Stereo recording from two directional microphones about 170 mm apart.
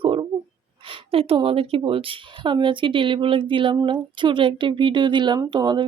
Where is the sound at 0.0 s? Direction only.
30° right (ahead or behind).